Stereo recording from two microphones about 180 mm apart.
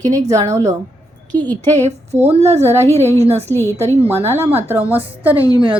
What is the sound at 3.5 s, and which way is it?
Speech, 10° left (ahead or behind).